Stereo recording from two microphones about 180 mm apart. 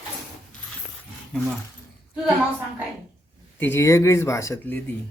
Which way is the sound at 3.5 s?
10° left (ahead or behind).